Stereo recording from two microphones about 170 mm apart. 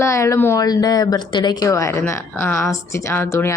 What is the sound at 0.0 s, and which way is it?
Speech, 15° left (ahead or behind).